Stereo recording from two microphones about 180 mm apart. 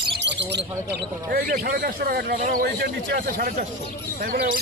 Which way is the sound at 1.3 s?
55° right (ahead or behind).